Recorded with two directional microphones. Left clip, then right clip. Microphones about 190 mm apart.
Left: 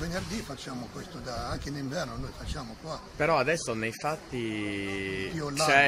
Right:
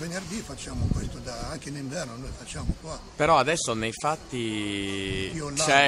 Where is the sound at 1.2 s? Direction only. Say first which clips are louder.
Even; 10° right (ahead or behind).